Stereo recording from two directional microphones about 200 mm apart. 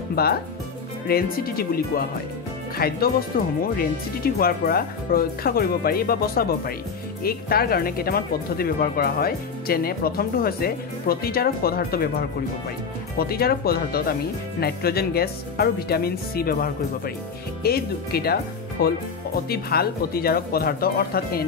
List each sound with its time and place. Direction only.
0.1 s speech: 50° left (ahead or behind)